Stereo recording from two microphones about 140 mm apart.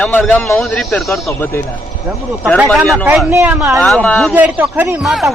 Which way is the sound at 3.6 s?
Centre (ahead or behind).